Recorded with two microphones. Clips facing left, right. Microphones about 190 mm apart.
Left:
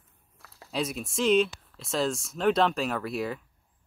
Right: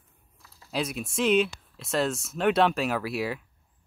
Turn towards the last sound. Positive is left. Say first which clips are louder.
# right 2 dB
turn(degrees=-5)  # may be behind; listen again after turning